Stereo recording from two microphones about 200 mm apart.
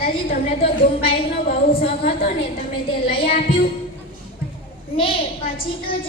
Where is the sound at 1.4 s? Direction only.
50° left (ahead or behind).